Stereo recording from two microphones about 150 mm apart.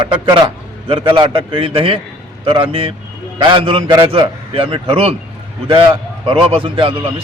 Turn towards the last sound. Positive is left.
turn(degrees=-35)  # may be behind; listen again after turning